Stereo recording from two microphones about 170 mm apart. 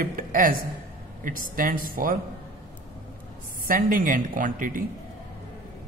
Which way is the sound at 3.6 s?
55° right (ahead or behind).